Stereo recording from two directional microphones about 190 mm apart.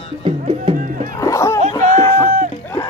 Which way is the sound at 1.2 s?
15° left (ahead or behind).